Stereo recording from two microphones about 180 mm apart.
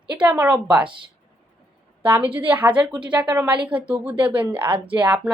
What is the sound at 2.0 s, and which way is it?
A woman's voice, 10° right (ahead or behind).